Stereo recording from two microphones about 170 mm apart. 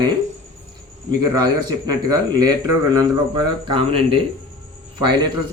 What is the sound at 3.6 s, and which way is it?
Speech, 30° right (ahead or behind).